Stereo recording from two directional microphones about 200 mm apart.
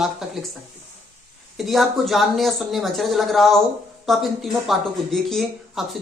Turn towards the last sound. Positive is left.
turn(degrees=0)  # may be behind; listen again after turning